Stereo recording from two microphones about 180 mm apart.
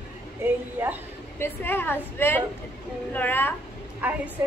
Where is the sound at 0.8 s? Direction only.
10° right (ahead or behind).